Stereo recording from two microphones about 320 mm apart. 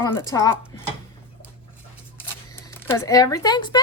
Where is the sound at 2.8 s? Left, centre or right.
Centre.